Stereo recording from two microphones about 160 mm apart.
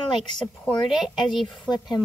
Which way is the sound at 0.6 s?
Centre (ahead or behind).